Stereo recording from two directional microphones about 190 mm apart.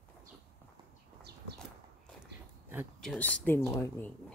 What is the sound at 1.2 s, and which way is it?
Horse, 60° right (ahead or behind).